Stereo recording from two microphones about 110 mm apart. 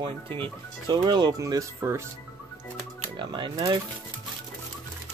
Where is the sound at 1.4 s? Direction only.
25° right (ahead or behind).